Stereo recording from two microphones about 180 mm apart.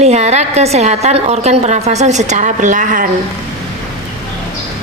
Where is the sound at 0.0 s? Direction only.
40° right (ahead or behind).